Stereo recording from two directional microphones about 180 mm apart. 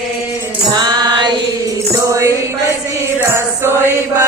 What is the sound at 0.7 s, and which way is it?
Mantra, 25° right (ahead or behind).